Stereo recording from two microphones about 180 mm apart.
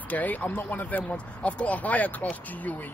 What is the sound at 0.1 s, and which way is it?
Speech, 10° left (ahead or behind).